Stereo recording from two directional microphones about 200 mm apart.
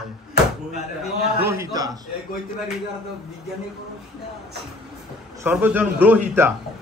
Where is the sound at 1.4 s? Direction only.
15° right (ahead or behind).